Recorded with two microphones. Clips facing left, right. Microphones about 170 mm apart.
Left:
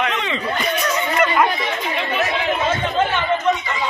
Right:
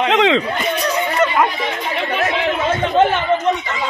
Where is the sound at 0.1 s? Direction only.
90° right.